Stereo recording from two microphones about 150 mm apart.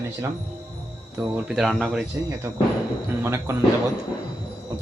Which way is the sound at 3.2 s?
20° right (ahead or behind).